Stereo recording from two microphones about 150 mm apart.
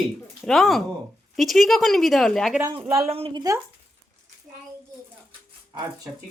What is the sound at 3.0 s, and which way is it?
Speech, 40° right (ahead or behind).